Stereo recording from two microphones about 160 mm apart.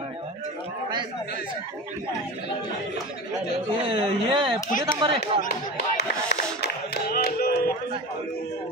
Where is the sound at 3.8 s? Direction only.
30° right (ahead or behind).